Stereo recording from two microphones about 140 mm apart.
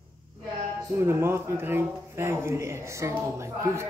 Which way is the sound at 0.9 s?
15° right (ahead or behind).